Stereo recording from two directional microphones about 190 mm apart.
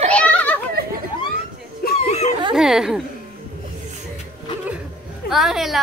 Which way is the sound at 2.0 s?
35° left (ahead or behind).